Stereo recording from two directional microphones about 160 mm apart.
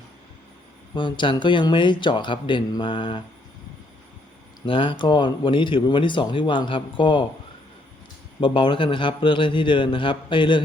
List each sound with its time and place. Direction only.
0.9 s speech: 30° left (ahead or behind)
4.6 s speech: 30° left (ahead or behind)
8.4 s speech: 30° left (ahead or behind)